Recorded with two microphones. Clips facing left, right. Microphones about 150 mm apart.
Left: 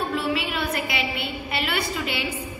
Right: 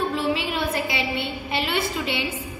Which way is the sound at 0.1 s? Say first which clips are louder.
Right 1 dB; 25° right (ahead or behind).